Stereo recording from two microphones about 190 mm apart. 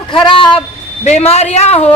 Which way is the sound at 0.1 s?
25° left (ahead or behind).